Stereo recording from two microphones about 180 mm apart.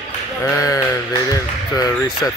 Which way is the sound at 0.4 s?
15° left (ahead or behind).